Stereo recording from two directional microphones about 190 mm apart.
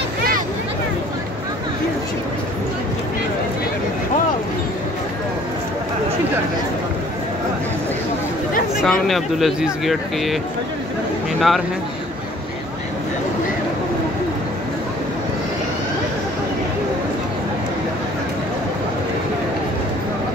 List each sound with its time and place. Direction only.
8.8 s speech: centre (ahead or behind)
11.3 s speech: centre (ahead or behind)